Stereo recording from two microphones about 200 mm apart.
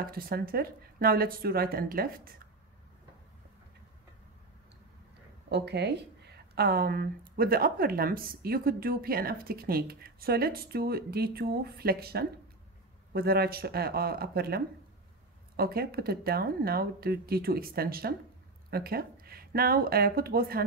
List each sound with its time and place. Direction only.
0.0 s speech: 45° right (ahead or behind)
5.5 s speech: 55° right (ahead or behind)